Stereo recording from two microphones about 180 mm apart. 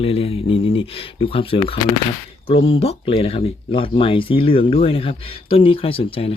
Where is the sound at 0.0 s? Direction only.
30° left (ahead or behind).